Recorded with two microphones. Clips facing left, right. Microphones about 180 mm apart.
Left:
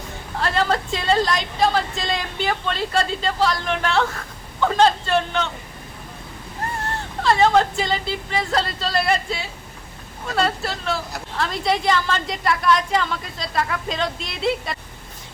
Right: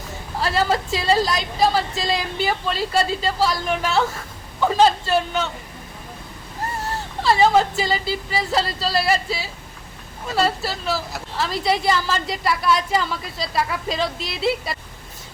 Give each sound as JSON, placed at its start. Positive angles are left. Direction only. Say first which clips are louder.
{"t": 0.3, "sound": "a woman's voice", "louder": "right 1 dB", "side_deg": -5}
{"t": 7.2, "sound": "a woman's voice", "louder": "even", "side_deg": -5}